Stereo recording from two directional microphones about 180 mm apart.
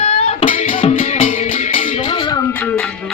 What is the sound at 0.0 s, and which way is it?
Music, 30° left (ahead or behind).